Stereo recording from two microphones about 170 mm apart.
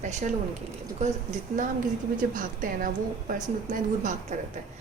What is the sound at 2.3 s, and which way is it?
A woman's voice, 50° right (ahead or behind).